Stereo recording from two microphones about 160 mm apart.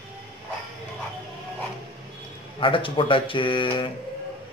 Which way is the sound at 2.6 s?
30° left (ahead or behind).